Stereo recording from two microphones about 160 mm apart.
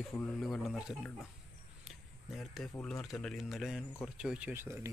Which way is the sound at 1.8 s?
Centre (ahead or behind).